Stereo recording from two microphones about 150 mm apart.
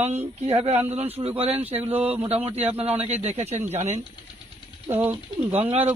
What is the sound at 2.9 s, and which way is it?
Speech, 45° right (ahead or behind).